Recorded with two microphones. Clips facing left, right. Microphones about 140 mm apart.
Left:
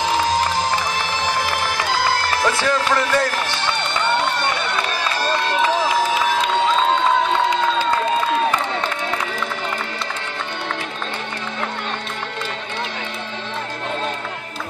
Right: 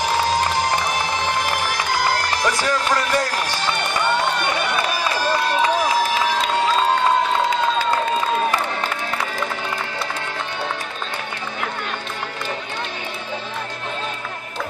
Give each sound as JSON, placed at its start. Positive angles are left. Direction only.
{"t": 0.6, "sound": "music", "side_deg": -20}
{"t": 4.9, "sound": "run", "side_deg": -10}